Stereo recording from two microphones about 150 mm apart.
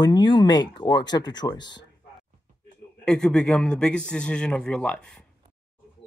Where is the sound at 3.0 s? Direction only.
5° left (ahead or behind).